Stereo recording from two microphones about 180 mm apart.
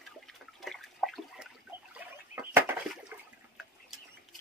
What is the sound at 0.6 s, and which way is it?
Water, centre (ahead or behind).